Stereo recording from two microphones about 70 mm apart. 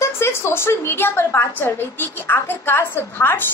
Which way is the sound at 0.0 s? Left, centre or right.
Left.